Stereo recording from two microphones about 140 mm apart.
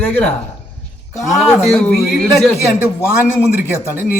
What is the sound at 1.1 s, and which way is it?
Speech, centre (ahead or behind).